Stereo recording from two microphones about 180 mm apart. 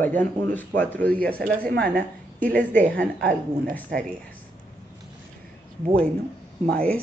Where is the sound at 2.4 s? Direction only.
10° left (ahead or behind).